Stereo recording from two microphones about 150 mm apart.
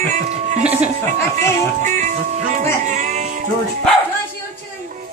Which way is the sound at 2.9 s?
55° right (ahead or behind).